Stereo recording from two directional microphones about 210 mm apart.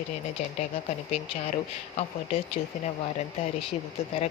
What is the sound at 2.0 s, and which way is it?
Speech, 30° left (ahead or behind).